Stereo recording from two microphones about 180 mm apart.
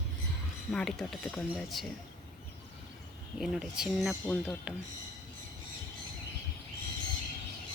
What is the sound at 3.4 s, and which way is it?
Speech, centre (ahead or behind).